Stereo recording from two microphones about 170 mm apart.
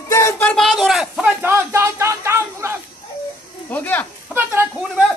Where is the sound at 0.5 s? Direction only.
Centre (ahead or behind).